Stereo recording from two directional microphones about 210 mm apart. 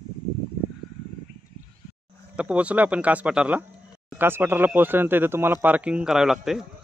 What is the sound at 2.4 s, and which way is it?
Speech, 5° right (ahead or behind).